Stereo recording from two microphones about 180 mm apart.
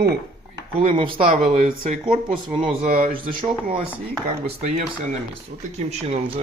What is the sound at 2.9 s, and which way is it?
Speech, 50° right (ahead or behind).